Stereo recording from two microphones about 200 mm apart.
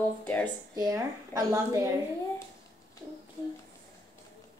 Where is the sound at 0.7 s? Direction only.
20° right (ahead or behind).